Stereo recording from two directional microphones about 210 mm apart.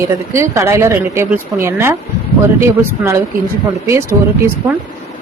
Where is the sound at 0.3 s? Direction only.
15° right (ahead or behind).